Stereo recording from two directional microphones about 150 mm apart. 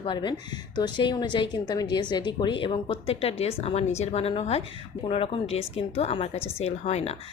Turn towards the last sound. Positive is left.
turn(degrees=45)  # may be behind; listen again after turning